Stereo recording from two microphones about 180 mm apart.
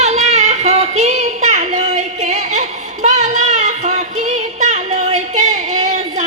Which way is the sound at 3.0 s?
40° right (ahead or behind).